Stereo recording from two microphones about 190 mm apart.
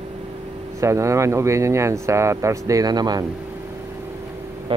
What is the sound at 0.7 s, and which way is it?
Speech, 15° right (ahead or behind).